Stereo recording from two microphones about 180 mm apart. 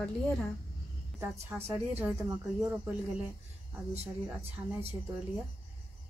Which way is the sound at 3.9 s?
35° right (ahead or behind).